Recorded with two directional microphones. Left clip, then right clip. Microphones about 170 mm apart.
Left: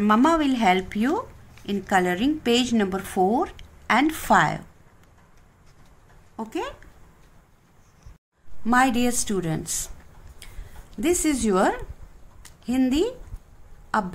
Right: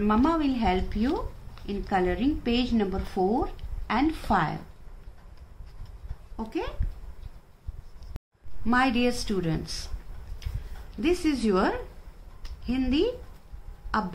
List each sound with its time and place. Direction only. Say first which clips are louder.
0.0 s a woman's voice: left 5 dB; 65° left (ahead or behind)
6.3 s speech: left 3 dB; 50° left (ahead or behind)
8.6 s a woman's voice: left 4 dB; 50° left (ahead or behind)
11.0 s a woman's voice: left 3 dB; 50° left (ahead or behind)